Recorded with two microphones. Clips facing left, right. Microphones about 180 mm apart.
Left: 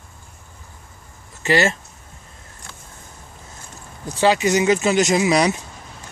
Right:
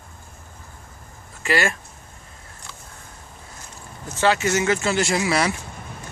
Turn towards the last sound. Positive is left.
turn(degrees=20)  # may be behind; listen again after turning